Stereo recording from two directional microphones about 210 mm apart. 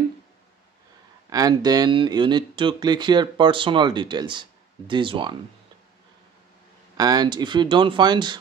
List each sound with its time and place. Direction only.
1.3 s speech: 20° right (ahead or behind)
7.0 s speech: 20° right (ahead or behind)